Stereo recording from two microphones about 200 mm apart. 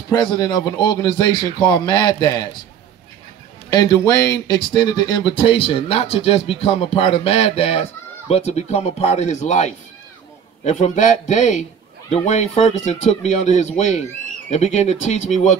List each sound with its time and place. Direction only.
0.1 s speech: 20° left (ahead or behind)
3.7 s speech: 20° left (ahead or behind); by 15.5 s 35° left (ahead or behind)